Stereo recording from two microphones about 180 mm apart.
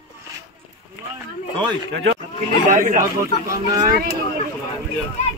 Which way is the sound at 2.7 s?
45° right (ahead or behind).